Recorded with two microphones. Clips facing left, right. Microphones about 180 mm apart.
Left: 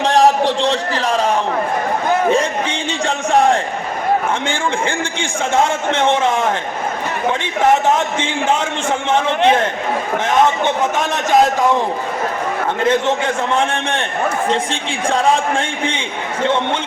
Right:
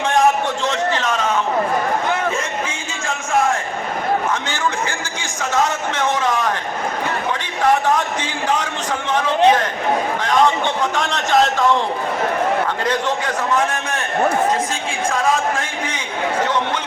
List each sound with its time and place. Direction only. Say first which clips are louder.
0.0 s a sound: left 3 dB; 35° left (ahead or behind)
5.5 s a man's voice: left 3 dB; 25° left (ahead or behind)
7.6 s a man's voice: left 2 dB; 25° left (ahead or behind)
12.8 s a man's voice: left 5 dB; 25° left (ahead or behind)